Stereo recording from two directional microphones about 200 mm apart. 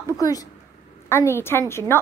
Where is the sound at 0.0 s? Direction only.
15° left (ahead or behind).